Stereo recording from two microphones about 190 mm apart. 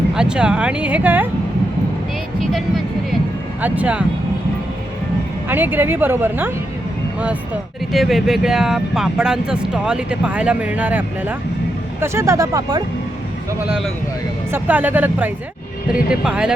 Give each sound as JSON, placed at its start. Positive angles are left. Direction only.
{"t": 0.1, "sound": "speech", "side_deg": -5}
{"t": 3.6, "sound": "a woman's voice", "side_deg": -5}
{"t": 5.5, "sound": "a woman's voice", "side_deg": -10}
{"t": 13.7, "sound": "a woman's voice", "side_deg": 0}